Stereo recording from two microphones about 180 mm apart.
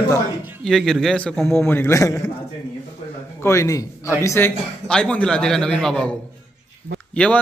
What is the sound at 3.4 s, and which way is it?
A man's voice, 15° left (ahead or behind).